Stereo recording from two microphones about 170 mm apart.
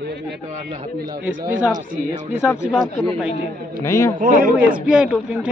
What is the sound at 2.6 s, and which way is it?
Speech, 5° right (ahead or behind).